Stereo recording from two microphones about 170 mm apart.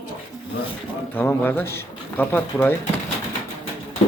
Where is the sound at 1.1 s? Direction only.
10° left (ahead or behind).